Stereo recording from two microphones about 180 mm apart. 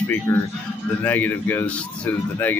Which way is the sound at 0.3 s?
15° left (ahead or behind).